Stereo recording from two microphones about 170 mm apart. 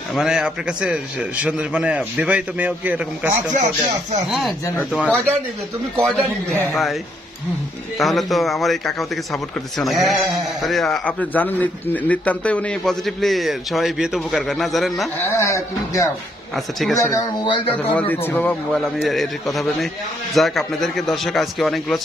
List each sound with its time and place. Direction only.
0.1 s a man's voice: 5° right (ahead or behind)
8.0 s a man's voice: centre (ahead or behind)
15.2 s speech: 15° left (ahead or behind)
16.5 s a man's voice: centre (ahead or behind)
17.0 s speech: 30° left (ahead or behind)
17.9 s a man's voice: 10° left (ahead or behind)